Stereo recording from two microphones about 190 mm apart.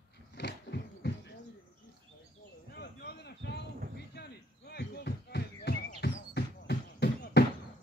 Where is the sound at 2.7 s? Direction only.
60° left (ahead or behind).